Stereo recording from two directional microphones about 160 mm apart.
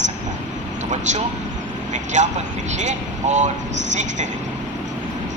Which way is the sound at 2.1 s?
50° right (ahead or behind).